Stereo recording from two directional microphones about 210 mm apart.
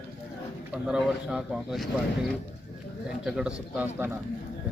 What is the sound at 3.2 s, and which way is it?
Speech, 5° right (ahead or behind).